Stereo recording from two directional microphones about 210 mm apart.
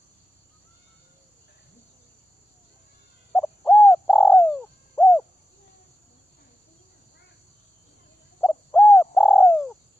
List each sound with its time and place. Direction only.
3.3 s bird: 5° left (ahead or behind)
8.4 s bird: 5° left (ahead or behind)